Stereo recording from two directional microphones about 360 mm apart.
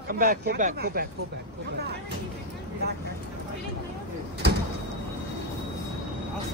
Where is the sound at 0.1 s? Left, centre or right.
Right.